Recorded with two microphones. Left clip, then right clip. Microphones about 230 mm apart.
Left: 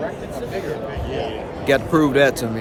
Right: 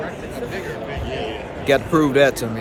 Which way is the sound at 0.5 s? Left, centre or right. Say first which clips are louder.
Left 2 dB; left.